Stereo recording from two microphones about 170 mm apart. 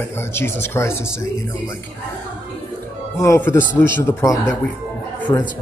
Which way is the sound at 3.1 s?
15° left (ahead or behind).